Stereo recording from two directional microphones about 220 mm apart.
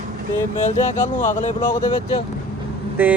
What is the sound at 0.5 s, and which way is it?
Music, 30° left (ahead or behind).